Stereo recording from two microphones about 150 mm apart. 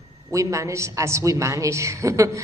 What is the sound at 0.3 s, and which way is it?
A woman's voice, 20° right (ahead or behind).